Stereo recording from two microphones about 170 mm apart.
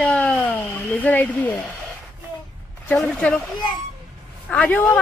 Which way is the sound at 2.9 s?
5° left (ahead or behind).